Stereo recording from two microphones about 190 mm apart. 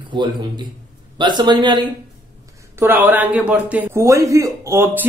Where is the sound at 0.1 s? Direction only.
25° right (ahead or behind).